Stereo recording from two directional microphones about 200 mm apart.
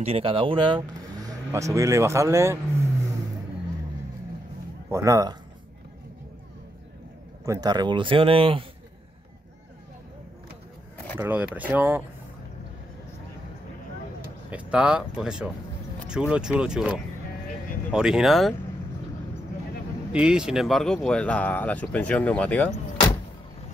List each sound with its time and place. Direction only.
0.0 s speech: 30° right (ahead or behind)
4.8 s speech: 15° right (ahead or behind)
7.4 s speech: 20° right (ahead or behind)
11.1 s speech: 10° right (ahead or behind)
14.5 s speech: 5° right (ahead or behind)
20.1 s speech: 5° right (ahead or behind)